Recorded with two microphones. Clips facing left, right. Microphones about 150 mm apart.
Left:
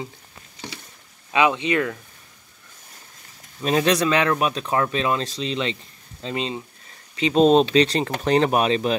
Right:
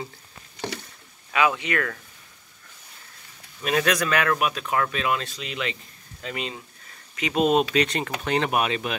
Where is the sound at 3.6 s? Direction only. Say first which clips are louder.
Left 4 dB; 30° left (ahead or behind).